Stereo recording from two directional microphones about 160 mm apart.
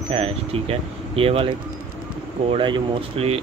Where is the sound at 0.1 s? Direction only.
35° right (ahead or behind).